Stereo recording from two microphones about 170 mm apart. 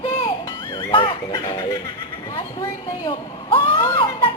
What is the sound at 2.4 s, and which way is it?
Speech, 25° left (ahead or behind).